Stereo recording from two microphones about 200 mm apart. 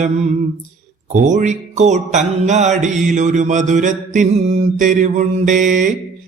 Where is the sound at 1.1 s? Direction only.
40° right (ahead or behind).